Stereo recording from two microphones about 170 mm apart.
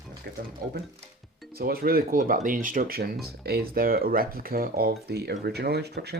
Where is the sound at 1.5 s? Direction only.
60° right (ahead or behind).